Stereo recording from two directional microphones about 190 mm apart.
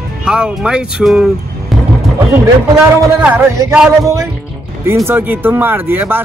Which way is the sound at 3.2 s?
5° right (ahead or behind).